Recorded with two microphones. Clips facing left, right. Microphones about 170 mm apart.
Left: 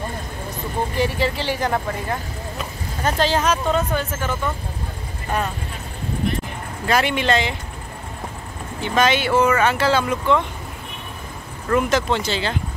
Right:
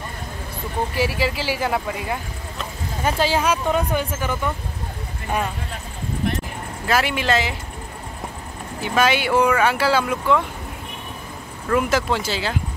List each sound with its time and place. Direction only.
0.9 s speech: 5° right (ahead or behind)
6.9 s speech: 5° right (ahead or behind)
8.8 s speech: 10° right (ahead or behind)
11.7 s speech: 5° right (ahead or behind)